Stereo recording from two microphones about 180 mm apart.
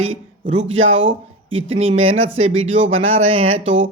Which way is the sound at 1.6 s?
30° right (ahead or behind).